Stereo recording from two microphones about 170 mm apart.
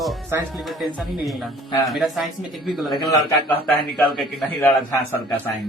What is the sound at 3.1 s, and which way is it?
Speech, 20° left (ahead or behind).